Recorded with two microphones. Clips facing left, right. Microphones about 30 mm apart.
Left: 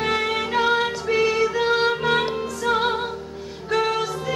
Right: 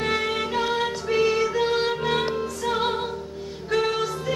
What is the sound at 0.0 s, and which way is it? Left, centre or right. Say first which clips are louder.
Music: left 2 dB; centre.